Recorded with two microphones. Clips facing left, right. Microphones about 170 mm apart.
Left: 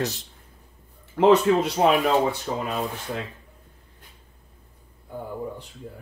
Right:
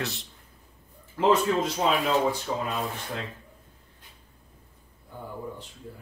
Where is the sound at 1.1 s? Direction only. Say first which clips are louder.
Left 5 dB; 65° left (ahead or behind).